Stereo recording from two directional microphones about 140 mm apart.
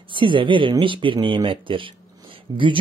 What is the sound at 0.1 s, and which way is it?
Speech, 35° right (ahead or behind).